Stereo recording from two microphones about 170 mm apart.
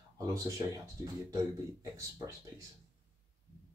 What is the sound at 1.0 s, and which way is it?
Speech, 20° right (ahead or behind).